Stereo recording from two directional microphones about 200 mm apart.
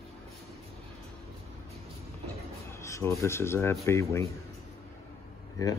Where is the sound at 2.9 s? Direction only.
15° left (ahead or behind).